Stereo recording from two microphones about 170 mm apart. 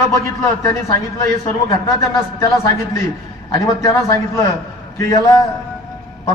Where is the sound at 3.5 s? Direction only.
20° left (ahead or behind).